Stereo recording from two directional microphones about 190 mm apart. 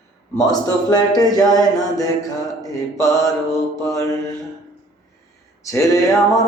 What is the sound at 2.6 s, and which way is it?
Mantra, 20° left (ahead or behind).